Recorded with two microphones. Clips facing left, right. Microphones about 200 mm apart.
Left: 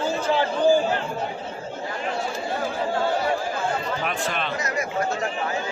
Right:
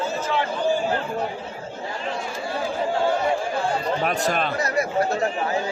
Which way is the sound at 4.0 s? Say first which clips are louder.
Right 4 dB; 40° right (ahead or behind).